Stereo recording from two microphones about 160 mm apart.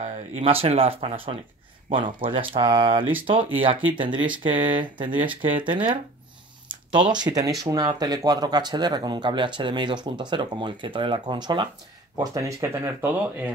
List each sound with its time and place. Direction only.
0.0 s speech: 35° right (ahead or behind)
7.1 s speech: 25° right (ahead or behind)